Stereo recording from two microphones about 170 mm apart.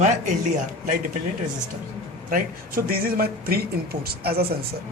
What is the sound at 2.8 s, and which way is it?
Speech, 60° right (ahead or behind).